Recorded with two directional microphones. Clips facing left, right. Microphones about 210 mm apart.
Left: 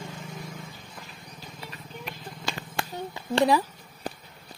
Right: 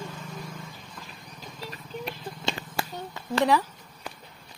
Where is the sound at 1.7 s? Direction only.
30° right (ahead or behind).